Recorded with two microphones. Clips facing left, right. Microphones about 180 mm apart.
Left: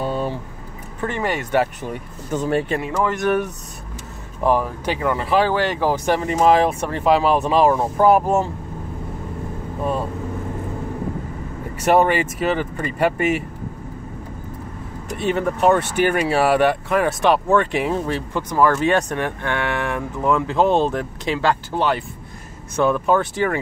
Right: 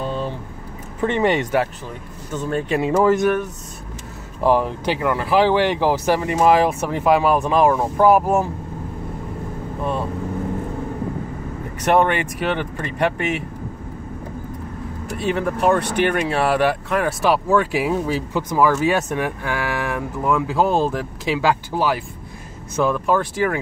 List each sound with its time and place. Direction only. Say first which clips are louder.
0.0 s vehicle: left 2 dB; 10° left (ahead or behind)
1.0 s speech: right 5 dB; 25° right (ahead or behind)
2.8 s speech: right 6 dB; 25° right (ahead or behind)
4.5 s speech: right 2 dB; 15° right (ahead or behind)
5.0 s speech: right 1 dB; 5° right (ahead or behind)
11.8 s speech: left 1 dB; 5° left (ahead or behind)
15.1 s speech: left 1 dB; centre (ahead or behind)